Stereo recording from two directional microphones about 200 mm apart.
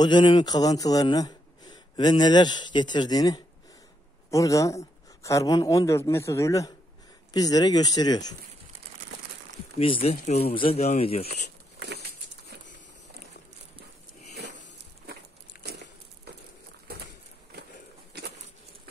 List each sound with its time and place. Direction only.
0.0 s speech: 20° left (ahead or behind)
9.8 s speech: 30° left (ahead or behind)
15.5 s a sound: 45° left (ahead or behind)